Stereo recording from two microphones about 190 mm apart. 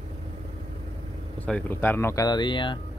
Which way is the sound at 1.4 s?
10° left (ahead or behind).